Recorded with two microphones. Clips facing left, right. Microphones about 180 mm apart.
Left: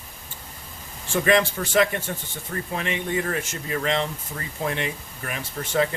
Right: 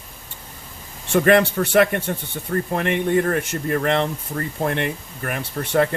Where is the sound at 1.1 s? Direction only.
60° right (ahead or behind).